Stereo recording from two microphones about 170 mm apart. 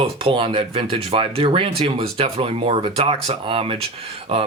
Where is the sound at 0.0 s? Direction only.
30° right (ahead or behind).